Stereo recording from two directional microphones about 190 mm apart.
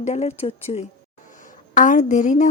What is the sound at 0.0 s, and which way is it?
A woman's voice, 35° left (ahead or behind).